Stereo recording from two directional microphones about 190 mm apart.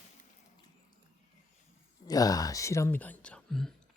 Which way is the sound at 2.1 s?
20° left (ahead or behind).